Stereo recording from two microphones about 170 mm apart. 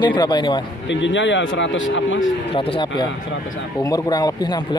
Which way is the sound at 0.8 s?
90° left.